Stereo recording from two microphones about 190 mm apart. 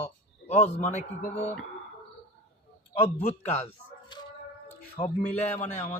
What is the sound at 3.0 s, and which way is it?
Speech, 35° left (ahead or behind).